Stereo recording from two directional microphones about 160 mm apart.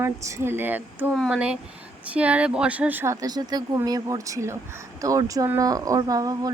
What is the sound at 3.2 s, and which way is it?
Speech, 25° right (ahead or behind).